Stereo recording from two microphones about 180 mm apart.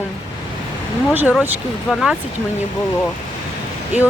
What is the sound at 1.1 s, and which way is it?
Speech, 10° right (ahead or behind).